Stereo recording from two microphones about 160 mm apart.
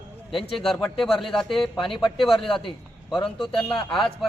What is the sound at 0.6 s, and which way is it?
A man's voice, centre (ahead or behind).